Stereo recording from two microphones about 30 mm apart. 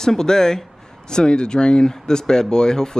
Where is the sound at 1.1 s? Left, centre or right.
Left.